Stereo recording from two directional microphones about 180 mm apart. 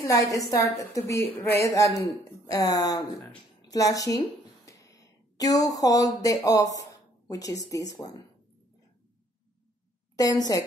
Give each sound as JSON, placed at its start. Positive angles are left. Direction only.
{"t": 0.0, "sound": "a woman's voice", "side_deg": 20}
{"t": 4.6, "sound": "a sound", "side_deg": 20}
{"t": 7.7, "sound": "speech", "side_deg": 20}
{"t": 10.1, "sound": "speech", "side_deg": 20}